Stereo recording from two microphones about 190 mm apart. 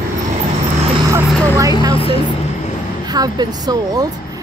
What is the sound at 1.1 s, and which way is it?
Speech, 15° right (ahead or behind).